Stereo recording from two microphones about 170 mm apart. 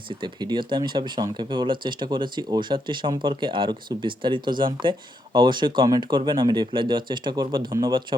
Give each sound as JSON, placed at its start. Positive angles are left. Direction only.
{"t": 0.2, "sound": "speech", "side_deg": -25}